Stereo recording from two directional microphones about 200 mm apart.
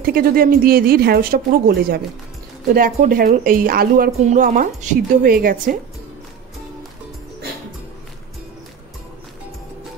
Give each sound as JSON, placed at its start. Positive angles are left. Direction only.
{"t": 0.0, "sound": "speech", "side_deg": -50}
{"t": 3.0, "sound": "speech", "side_deg": -45}